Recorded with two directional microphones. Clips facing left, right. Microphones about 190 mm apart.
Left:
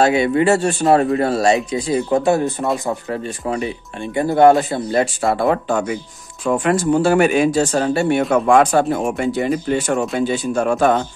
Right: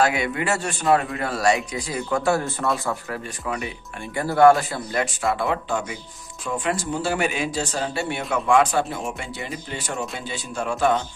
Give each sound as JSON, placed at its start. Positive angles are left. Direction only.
{"t": 0.0, "sound": "a man's voice", "side_deg": 30}
{"t": 3.4, "sound": "speech", "side_deg": 30}